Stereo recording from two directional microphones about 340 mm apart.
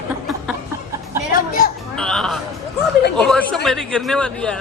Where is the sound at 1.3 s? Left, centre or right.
Left.